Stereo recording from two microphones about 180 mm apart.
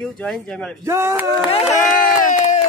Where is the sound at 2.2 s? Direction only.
40° left (ahead or behind).